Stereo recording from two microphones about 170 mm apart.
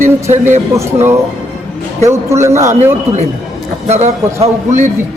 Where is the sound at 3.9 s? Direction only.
45° right (ahead or behind).